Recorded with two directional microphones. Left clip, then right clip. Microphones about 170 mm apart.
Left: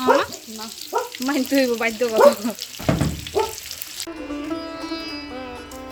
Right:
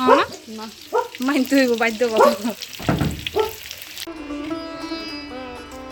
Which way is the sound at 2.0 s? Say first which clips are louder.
Left 2 dB; 5° right (ahead or behind).